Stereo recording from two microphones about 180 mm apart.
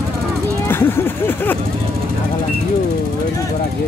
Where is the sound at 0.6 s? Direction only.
10° left (ahead or behind).